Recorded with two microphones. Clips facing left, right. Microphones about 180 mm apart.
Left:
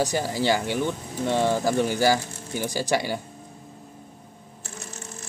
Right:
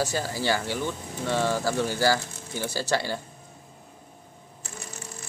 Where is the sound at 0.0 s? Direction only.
15° left (ahead or behind).